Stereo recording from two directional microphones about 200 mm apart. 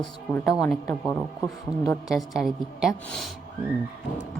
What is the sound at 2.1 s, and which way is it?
A woman's voice, centre (ahead or behind).